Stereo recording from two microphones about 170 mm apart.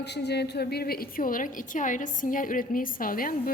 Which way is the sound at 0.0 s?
80° left.